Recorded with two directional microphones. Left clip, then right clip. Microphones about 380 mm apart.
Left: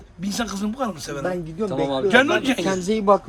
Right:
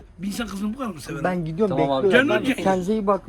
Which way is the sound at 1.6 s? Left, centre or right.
Centre.